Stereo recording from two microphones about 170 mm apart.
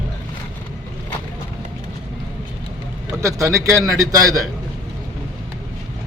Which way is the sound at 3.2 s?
20° right (ahead or behind).